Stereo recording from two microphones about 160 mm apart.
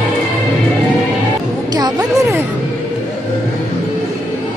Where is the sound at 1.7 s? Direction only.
25° right (ahead or behind).